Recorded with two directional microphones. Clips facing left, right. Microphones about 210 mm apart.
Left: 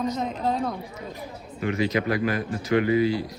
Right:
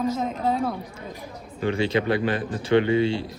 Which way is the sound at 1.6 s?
30° right (ahead or behind).